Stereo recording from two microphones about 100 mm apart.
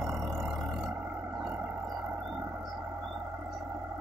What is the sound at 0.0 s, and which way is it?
Vehicle, 5° right (ahead or behind).